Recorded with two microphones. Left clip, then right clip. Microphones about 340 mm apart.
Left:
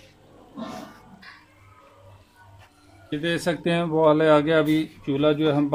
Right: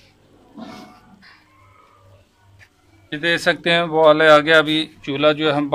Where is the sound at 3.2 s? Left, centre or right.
Right.